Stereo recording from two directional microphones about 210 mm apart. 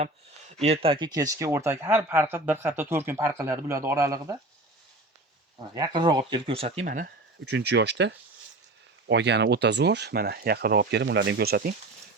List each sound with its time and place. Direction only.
0.0 s speech: 30° right (ahead or behind); by 4.4 s 15° right (ahead or behind)
5.7 s speech: 20° right (ahead or behind)
6.8 s speech: 40° right (ahead or behind)